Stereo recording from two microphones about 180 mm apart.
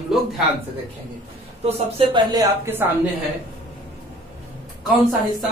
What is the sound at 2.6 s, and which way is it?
Speech, 10° right (ahead or behind).